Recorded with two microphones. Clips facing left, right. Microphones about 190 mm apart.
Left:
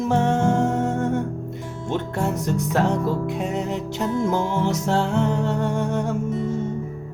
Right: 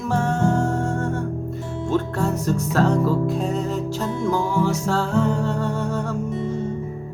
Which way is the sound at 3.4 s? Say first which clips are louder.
Right 1 dB; 65° left (ahead or behind).